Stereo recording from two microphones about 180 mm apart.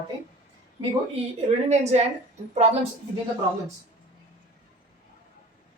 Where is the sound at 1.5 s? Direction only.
40° right (ahead or behind).